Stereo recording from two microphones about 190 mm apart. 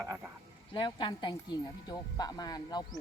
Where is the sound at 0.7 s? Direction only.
25° left (ahead or behind).